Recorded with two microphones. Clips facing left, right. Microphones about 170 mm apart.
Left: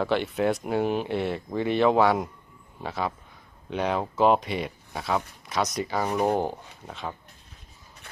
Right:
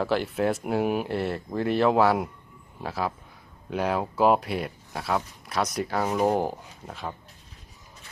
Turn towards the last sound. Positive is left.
turn(degrees=-5)  # may be behind; listen again after turning